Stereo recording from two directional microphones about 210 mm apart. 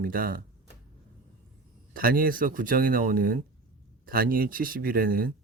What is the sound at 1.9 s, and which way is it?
Speech, 45° right (ahead or behind).